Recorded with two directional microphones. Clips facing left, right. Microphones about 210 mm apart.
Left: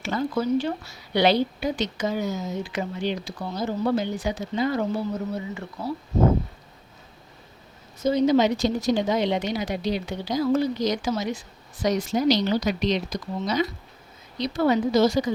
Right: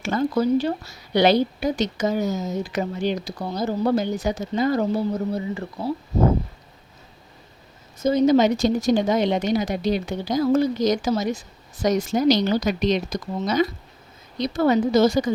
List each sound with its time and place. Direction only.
0.0 s a woman's voice: 45° right (ahead or behind)
8.0 s a woman's voice: 45° right (ahead or behind)